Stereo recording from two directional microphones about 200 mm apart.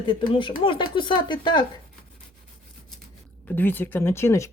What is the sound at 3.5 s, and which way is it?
Speech, 10° left (ahead or behind).